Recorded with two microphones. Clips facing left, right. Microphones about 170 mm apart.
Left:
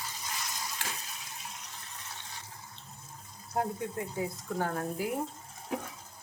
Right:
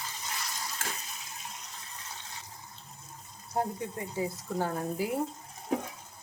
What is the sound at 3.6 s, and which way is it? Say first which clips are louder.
Speech: even; centre (ahead or behind).